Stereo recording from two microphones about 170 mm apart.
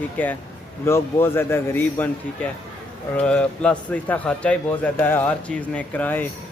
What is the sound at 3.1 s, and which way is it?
A man's voice, 10° left (ahead or behind).